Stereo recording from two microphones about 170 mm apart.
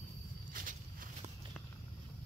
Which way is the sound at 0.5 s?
50° right (ahead or behind).